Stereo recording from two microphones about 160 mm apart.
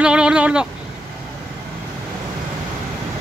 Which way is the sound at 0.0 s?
5° right (ahead or behind).